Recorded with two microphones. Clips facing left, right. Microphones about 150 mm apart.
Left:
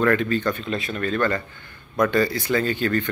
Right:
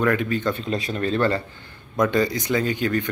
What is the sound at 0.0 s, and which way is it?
Speech, 10° right (ahead or behind).